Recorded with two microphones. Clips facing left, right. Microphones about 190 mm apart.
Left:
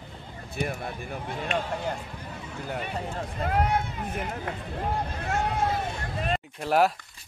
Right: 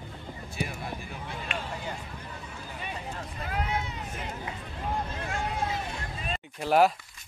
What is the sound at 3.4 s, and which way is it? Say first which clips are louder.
Speech: left 7 dB; 55° left (ahead or behind).